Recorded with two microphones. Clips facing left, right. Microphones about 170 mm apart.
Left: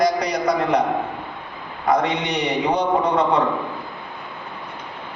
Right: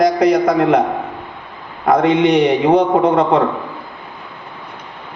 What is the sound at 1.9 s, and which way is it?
Speech, 55° right (ahead or behind).